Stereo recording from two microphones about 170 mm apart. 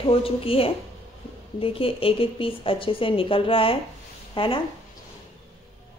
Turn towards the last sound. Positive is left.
turn(degrees=30)  # may be behind; listen again after turning